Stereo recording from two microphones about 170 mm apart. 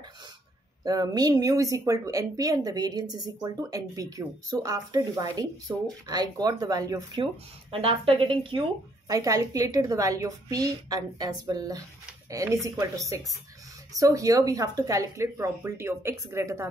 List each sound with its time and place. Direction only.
0.8 s a woman's voice: 20° right (ahead or behind)
7.7 s a woman's voice: 35° right (ahead or behind); by 16.6 s 15° right (ahead or behind)